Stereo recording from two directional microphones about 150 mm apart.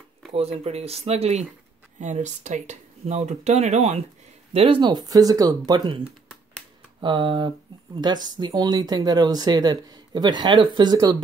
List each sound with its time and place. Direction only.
0.3 s speech: 45° right (ahead or behind)
4.6 s speech: 35° right (ahead or behind)